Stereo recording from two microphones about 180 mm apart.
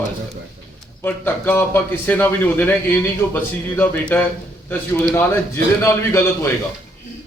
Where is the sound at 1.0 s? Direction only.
10° left (ahead or behind).